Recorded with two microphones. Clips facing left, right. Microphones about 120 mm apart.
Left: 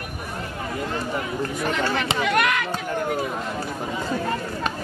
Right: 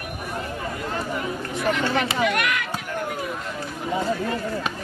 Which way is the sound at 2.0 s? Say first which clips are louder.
Left 1 dB; 30° left (ahead or behind).